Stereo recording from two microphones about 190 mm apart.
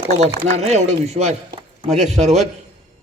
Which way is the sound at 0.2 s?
35° right (ahead or behind).